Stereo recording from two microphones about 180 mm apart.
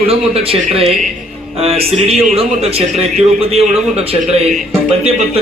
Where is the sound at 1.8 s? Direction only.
35° right (ahead or behind).